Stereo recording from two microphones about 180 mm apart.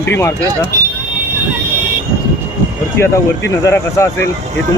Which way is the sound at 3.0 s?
15° left (ahead or behind).